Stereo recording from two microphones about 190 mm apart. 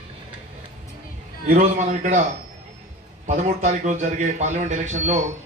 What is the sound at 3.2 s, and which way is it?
A man's voice, 40° right (ahead or behind).